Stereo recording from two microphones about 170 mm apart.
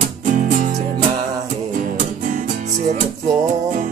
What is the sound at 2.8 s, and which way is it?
Music, 45° right (ahead or behind).